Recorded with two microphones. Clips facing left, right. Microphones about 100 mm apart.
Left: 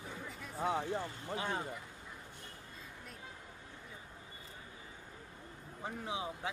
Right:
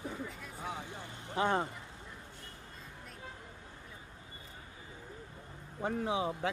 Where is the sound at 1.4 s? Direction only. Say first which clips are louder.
Right 9 dB; 60° right (ahead or behind).